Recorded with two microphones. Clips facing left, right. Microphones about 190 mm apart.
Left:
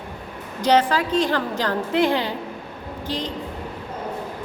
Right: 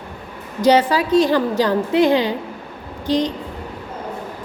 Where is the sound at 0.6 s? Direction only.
10° right (ahead or behind).